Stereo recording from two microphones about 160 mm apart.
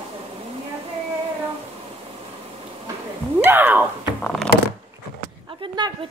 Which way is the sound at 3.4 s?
10° right (ahead or behind).